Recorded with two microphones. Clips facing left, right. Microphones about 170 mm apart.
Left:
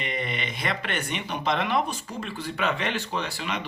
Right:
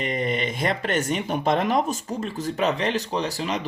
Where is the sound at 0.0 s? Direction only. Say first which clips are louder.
Right 6 dB; 45° right (ahead or behind).